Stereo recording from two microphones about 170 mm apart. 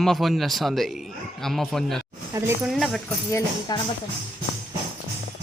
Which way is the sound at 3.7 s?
25° left (ahead or behind).